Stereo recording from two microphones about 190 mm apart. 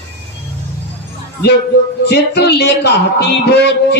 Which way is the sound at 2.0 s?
60° left (ahead or behind).